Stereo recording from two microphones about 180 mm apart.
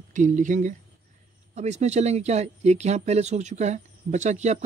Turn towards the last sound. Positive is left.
turn(degrees=-40)  # may be behind; listen again after turning